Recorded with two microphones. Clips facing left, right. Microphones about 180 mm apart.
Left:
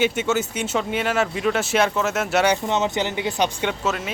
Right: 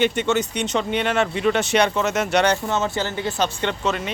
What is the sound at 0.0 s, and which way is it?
Speech, 5° left (ahead or behind).